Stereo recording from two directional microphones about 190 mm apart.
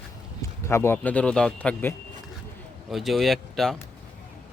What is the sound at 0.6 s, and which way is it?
Speech, 15° left (ahead or behind).